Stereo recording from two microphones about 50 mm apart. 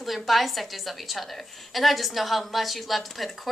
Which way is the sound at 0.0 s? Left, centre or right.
Centre.